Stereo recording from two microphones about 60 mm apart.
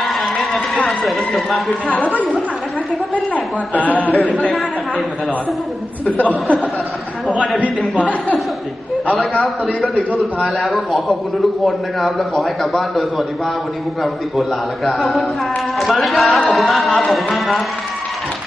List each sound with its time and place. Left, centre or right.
0.0 s a man's voice: centre
3.7 s speech: left
4.1 s speech: centre
6.0 s speech: left
9.8 s speech: centre
14.9 s speech: centre